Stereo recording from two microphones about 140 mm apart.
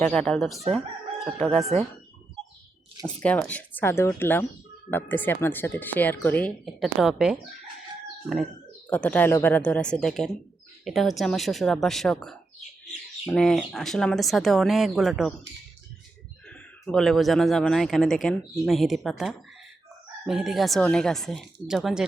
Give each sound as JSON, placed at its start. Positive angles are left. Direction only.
{"t": 0.0, "sound": "speech", "side_deg": 5}
{"t": 3.2, "sound": "speech", "side_deg": 10}
{"t": 6.7, "sound": "speech", "side_deg": 0}
{"t": 8.9, "sound": "speech", "side_deg": 10}
{"t": 16.5, "sound": "speech", "side_deg": 5}